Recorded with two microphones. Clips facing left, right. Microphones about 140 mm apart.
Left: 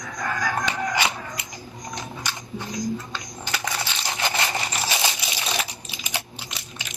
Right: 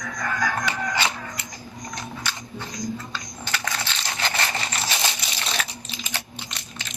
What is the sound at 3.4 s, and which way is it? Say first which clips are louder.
Crushing: left 1 dB; 15° left (ahead or behind).